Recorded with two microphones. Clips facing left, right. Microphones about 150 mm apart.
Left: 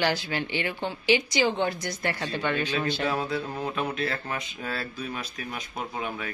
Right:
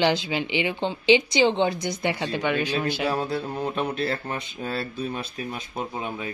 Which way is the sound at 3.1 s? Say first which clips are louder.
Right 2 dB; 30° right (ahead or behind).